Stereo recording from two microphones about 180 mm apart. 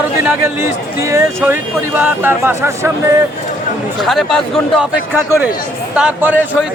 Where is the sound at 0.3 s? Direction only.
15° right (ahead or behind).